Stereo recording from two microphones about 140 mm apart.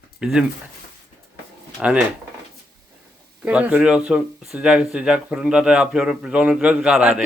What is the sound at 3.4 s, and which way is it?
Speech, 10° right (ahead or behind).